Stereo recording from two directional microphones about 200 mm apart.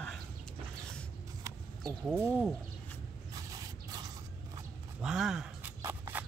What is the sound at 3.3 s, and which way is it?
Scrape, 20° right (ahead or behind).